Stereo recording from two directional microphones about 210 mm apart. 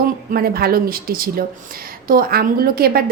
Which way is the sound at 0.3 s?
45° right (ahead or behind).